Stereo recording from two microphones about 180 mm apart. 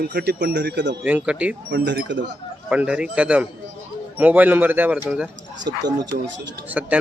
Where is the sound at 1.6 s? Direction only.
80° right.